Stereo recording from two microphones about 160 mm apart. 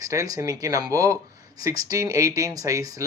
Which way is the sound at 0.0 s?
20° right (ahead or behind).